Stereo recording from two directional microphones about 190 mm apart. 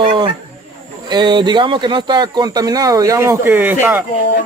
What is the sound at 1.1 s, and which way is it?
Speech, 25° right (ahead or behind).